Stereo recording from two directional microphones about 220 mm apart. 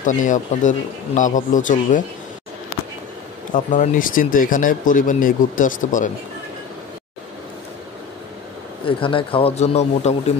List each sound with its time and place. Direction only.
0.0 s speech: 35° left (ahead or behind)
3.5 s speech: 35° left (ahead or behind)
8.8 s speech: 25° left (ahead or behind)